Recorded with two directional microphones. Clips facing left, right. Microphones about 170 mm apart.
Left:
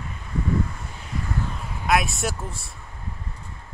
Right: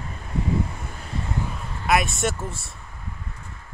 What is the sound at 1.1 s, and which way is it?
Vehicle, 30° right (ahead or behind).